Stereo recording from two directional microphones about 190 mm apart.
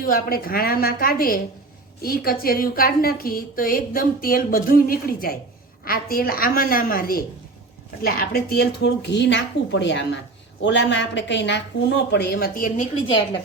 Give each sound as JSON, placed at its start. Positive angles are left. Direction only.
{"t": 0.0, "sound": "a woman's voice", "side_deg": 50}